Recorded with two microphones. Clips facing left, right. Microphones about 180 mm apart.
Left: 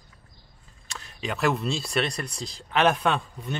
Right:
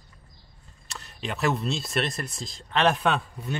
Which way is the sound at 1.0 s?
Centre (ahead or behind).